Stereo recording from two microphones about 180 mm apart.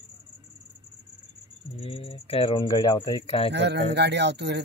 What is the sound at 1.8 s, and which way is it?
Speech, 30° left (ahead or behind).